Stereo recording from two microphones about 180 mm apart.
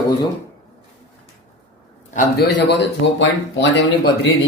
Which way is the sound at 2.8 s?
85° left.